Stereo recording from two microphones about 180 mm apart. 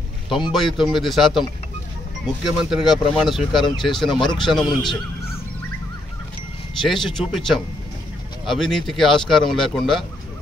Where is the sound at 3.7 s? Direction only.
25° left (ahead or behind).